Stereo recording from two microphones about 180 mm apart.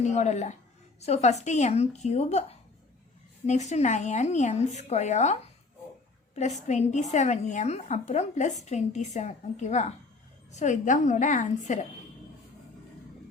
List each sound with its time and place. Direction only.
0.0 s a woman's voice: 40° left (ahead or behind)
3.4 s a woman's voice: 40° left (ahead or behind)